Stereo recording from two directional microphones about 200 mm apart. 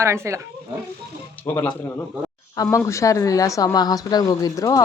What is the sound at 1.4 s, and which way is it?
A woman's voice, 10° left (ahead or behind).